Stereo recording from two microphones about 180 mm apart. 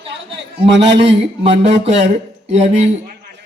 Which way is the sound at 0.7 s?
75° right (ahead or behind).